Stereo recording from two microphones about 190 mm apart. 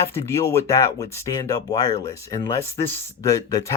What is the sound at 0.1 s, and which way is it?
Speech, 15° left (ahead or behind).